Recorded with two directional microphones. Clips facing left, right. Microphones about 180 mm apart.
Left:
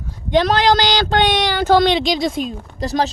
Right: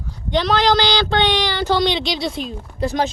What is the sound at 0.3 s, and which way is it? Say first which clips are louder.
A woman's voice: left 2 dB; 50° left (ahead or behind).